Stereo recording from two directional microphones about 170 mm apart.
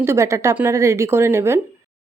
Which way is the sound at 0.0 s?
15° right (ahead or behind).